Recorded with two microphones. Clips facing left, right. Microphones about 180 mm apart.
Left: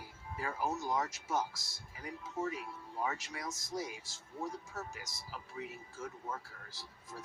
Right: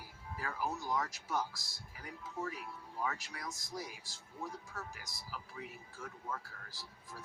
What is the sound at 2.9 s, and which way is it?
Speech, 20° left (ahead or behind).